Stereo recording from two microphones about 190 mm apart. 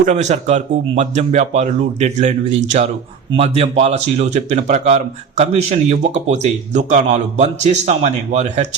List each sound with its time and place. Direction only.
0.0 s speech: 40° right (ahead or behind)